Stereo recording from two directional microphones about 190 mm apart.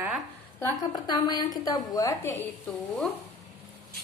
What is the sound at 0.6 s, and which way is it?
A woman's voice, 15° left (ahead or behind).